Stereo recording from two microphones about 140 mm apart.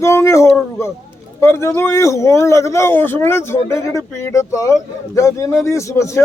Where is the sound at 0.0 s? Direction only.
20° left (ahead or behind).